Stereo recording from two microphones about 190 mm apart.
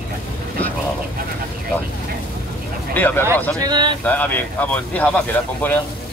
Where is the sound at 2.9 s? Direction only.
10° left (ahead or behind).